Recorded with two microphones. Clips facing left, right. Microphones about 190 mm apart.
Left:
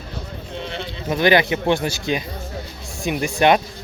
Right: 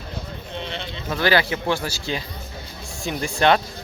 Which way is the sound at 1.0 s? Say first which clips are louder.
Left 4 dB; 20° left (ahead or behind).